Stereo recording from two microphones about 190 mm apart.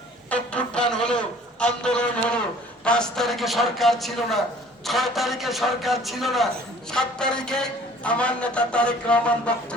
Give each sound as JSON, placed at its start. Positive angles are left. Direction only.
{"t": 0.3, "sound": "a man's voice", "side_deg": 5}